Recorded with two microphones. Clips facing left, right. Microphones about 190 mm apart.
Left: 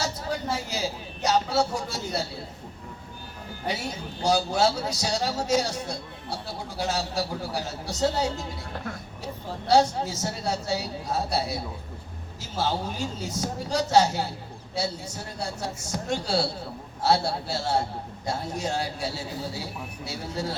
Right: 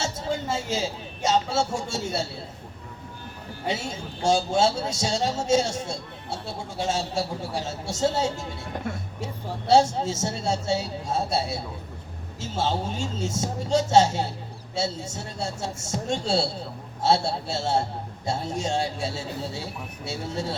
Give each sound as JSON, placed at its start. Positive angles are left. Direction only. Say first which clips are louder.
{"t": 0.0, "sound": "speech", "louder": "right 1 dB", "side_deg": -25}
{"t": 3.7, "sound": "a man's voice", "louder": "right 2 dB", "side_deg": -25}
{"t": 8.7, "sound": "a man's voice", "louder": "right 4 dB", "side_deg": -15}